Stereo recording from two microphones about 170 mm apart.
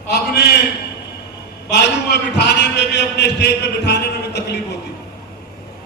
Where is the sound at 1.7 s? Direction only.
85° left.